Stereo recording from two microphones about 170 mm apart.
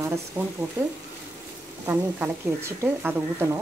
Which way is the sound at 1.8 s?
15° right (ahead or behind).